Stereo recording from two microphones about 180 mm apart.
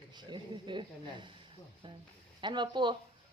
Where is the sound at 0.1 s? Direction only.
25° right (ahead or behind).